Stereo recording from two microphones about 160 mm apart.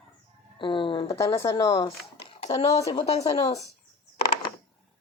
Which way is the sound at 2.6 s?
40° left (ahead or behind).